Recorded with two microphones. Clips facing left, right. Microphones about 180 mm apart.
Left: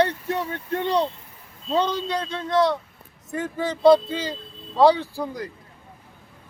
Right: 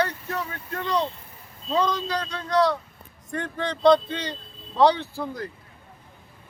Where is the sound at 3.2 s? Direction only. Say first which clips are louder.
Left 2 dB; 5° left (ahead or behind).